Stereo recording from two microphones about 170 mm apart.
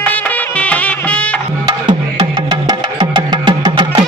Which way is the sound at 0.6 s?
10° left (ahead or behind).